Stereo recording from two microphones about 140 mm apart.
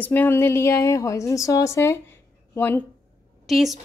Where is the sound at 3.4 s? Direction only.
Centre (ahead or behind).